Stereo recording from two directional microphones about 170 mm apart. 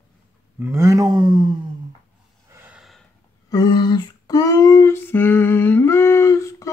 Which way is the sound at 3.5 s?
25° left (ahead or behind).